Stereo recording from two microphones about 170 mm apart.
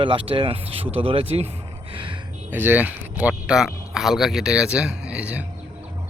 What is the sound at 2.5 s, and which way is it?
Speech, 10° right (ahead or behind).